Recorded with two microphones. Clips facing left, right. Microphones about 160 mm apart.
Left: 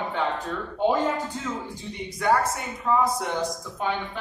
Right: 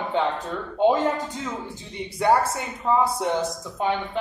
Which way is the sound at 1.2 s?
20° right (ahead or behind).